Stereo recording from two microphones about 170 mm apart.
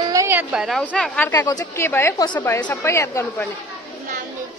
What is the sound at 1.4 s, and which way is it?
A woman's voice, 20° left (ahead or behind).